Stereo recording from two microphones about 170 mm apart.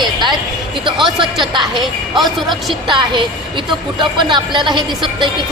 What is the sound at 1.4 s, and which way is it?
Speech, 25° right (ahead or behind).